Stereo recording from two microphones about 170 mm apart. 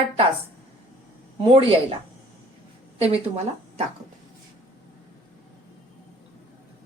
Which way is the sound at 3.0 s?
35° right (ahead or behind).